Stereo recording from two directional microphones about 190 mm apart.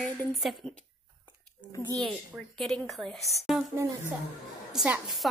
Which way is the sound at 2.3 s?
Centre (ahead or behind).